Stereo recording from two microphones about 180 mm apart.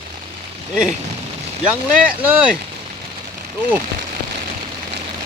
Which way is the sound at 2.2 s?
10° right (ahead or behind).